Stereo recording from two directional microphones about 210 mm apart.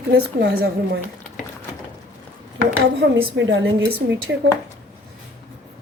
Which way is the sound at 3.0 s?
60° right (ahead or behind).